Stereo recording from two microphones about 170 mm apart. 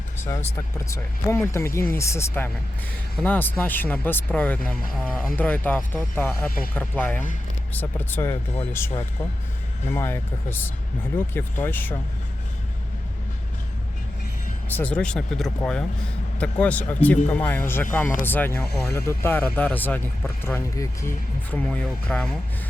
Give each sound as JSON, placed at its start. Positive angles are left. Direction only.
{"t": 0.2, "sound": "speech", "side_deg": 15}
{"t": 14.7, "sound": "speech", "side_deg": 10}